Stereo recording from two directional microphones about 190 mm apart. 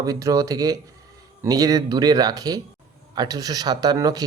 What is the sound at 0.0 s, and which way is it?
Speech, 20° right (ahead or behind).